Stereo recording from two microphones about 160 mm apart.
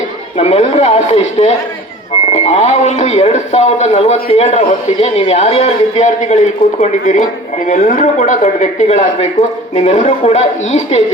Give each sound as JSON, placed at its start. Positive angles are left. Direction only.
{"t": 0.3, "sound": "speech", "side_deg": 40}